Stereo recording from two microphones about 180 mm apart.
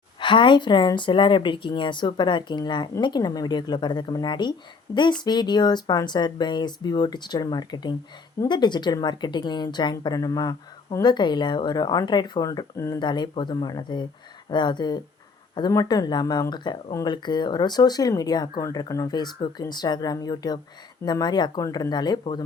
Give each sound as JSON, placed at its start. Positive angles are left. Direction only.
{"t": 0.2, "sound": "speech", "side_deg": 25}